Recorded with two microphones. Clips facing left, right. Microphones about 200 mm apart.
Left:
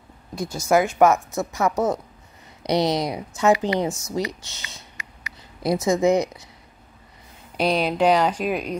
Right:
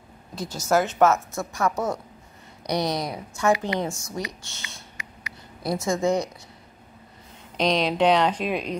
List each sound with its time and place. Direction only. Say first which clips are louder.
0.4 s a woman's voice: left 3 dB; 10° left (ahead or behind)
7.5 s a woman's voice: left 1 dB; 5° left (ahead or behind)